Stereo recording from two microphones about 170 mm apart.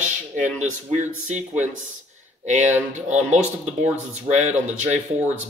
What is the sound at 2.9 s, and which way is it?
Speech, 45° right (ahead or behind).